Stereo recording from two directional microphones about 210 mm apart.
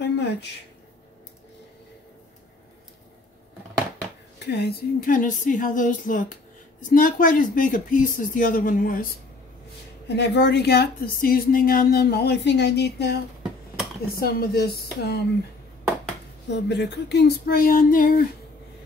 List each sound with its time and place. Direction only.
0.0 s a sound: 55° left (ahead or behind)
4.4 s speech: 55° left (ahead or behind)
10.0 s a woman's voice: 55° left (ahead or behind)
16.4 s a woman's voice: 55° left (ahead or behind)